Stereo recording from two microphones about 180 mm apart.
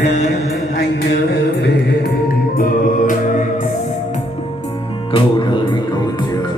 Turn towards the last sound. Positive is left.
turn(degrees=25)  # may be behind; listen again after turning